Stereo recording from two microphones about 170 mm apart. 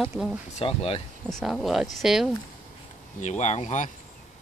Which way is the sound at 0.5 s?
35° left (ahead or behind).